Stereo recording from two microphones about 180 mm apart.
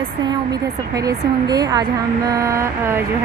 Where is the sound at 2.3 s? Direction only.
15° right (ahead or behind).